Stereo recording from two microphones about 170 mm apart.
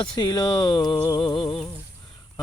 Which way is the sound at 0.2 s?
25° left (ahead or behind).